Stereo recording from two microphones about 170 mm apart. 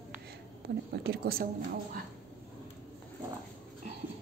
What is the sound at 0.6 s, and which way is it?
Speech, 75° right (ahead or behind).